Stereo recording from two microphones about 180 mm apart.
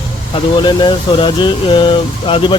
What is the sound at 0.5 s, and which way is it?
Speech, 25° left (ahead or behind).